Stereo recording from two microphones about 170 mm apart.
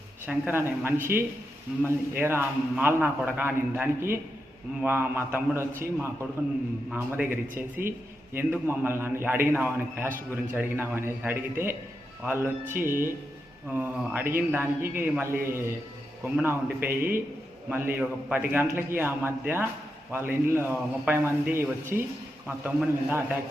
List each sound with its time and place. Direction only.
0.3 s a man's voice: 10° right (ahead or behind)
12.8 s speech: 55° right (ahead or behind)
13.7 s a man's voice: 10° right (ahead or behind)